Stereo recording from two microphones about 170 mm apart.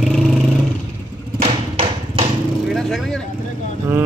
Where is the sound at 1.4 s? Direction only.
35° right (ahead or behind).